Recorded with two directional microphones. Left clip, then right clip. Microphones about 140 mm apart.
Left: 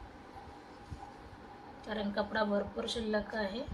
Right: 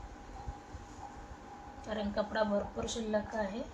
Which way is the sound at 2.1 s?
25° left (ahead or behind).